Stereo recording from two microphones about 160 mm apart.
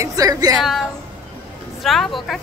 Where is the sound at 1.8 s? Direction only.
Centre (ahead or behind).